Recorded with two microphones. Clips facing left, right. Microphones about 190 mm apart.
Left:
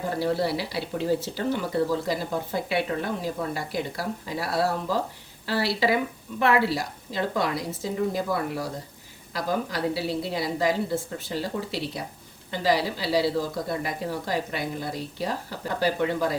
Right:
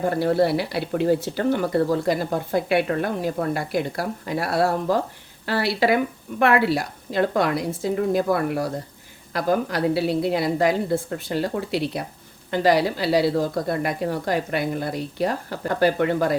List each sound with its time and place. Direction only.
0.0 s speech: 55° right (ahead or behind)